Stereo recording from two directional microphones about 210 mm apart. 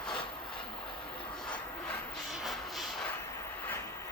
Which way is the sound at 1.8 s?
Centre (ahead or behind).